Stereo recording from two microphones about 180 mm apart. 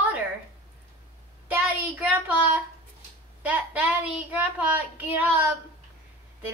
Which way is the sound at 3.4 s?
10° right (ahead or behind).